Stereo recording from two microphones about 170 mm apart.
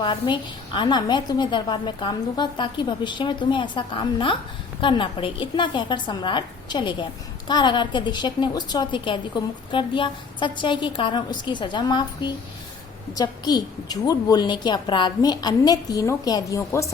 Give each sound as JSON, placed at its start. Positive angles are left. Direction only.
{"t": 0.0, "sound": "a woman's voice", "side_deg": 30}